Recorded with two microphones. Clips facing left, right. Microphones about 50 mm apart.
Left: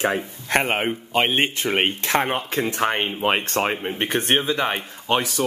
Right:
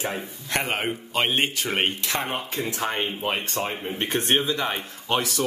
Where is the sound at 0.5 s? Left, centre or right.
Left.